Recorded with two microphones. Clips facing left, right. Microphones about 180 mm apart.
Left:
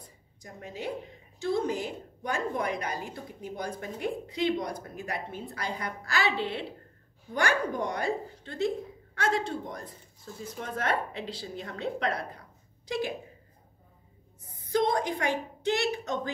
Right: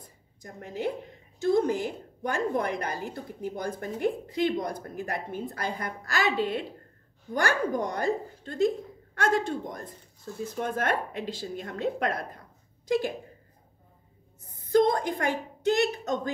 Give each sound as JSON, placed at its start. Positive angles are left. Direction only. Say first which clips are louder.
{"t": 0.4, "sound": "a woman's voice", "louder": "right 6 dB", "side_deg": -55}
{"t": 14.7, "sound": "a woman's voice", "louder": "right 4 dB", "side_deg": -50}